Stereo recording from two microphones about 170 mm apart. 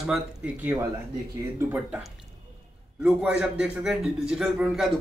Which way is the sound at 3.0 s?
5° right (ahead or behind).